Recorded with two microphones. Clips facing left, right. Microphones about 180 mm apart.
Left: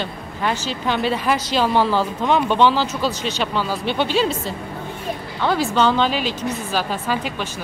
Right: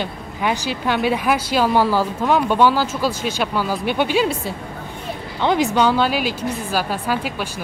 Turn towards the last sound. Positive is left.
turn(degrees=-10)  # may be behind; listen again after turning